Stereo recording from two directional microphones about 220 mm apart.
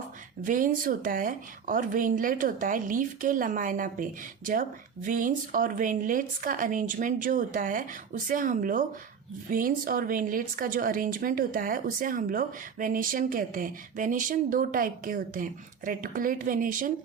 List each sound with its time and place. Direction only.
0.4 s a woman's voice: 35° right (ahead or behind)